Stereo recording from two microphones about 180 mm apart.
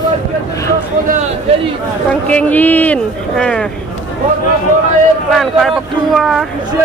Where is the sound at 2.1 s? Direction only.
10° left (ahead or behind).